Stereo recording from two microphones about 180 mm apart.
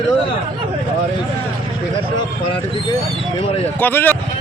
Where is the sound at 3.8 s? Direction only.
10° left (ahead or behind).